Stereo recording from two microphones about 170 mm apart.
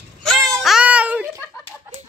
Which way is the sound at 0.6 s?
5° right (ahead or behind).